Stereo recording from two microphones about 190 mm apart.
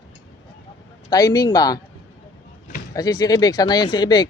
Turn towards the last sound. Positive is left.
turn(degrees=20)  # may be behind; listen again after turning